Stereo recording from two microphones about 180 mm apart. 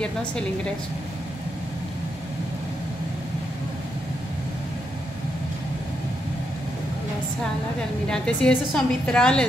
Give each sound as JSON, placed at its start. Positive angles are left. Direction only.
{"t": 0.0, "sound": "a woman's voice", "side_deg": 5}
{"t": 8.1, "sound": "a woman's voice", "side_deg": 5}